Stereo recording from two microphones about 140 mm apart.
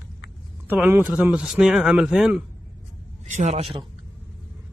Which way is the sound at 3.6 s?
40° right (ahead or behind).